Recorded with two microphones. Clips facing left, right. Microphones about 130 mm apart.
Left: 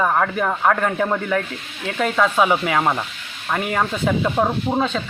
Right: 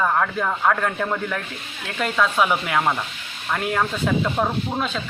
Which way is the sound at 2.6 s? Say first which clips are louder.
Left 2 dB; 5° left (ahead or behind).